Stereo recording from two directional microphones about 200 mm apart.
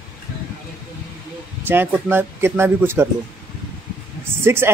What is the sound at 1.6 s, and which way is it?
A man's voice, 10° right (ahead or behind).